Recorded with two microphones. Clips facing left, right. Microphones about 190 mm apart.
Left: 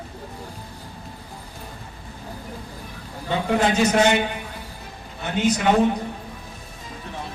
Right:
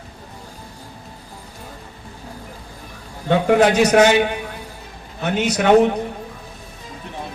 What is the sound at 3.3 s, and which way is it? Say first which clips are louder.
Speech: right 7 dB; 75° right (ahead or behind).